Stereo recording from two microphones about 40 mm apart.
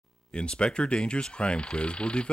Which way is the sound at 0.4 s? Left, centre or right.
Left.